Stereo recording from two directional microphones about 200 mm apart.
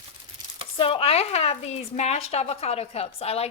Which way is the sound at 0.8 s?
30° left (ahead or behind).